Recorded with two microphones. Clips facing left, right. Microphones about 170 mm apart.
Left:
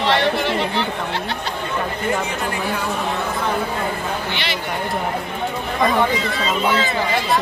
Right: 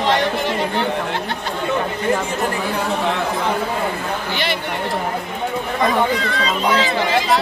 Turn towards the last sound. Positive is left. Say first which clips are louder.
# right 1 dB
turn(degrees=0)  # may be behind; listen again after turning